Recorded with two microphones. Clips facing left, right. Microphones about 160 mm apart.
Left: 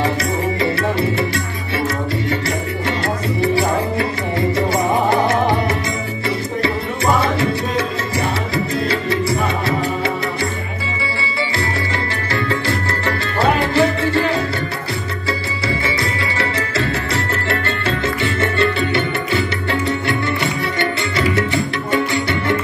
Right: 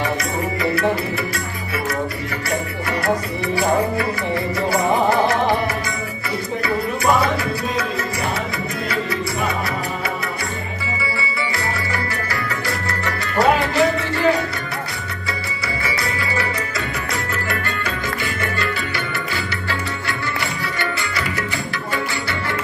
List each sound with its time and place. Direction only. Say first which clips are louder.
0.6 s music: left 1 dB; 25° left (ahead or behind)
3.5 s music: left 1 dB; 25° left (ahead or behind)
7.2 s music: left 2 dB; 25° left (ahead or behind)
8.8 s music: left 4 dB; 30° left (ahead or behind)
12.3 s music: left 5 dB; 30° left (ahead or behind)
15.8 s music: left 3 dB; 25° left (ahead or behind)